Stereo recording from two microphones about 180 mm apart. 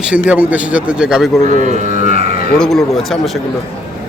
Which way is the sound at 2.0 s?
40° right (ahead or behind).